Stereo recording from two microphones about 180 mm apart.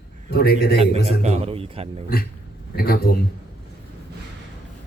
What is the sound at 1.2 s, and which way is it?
Speech, 35° right (ahead or behind).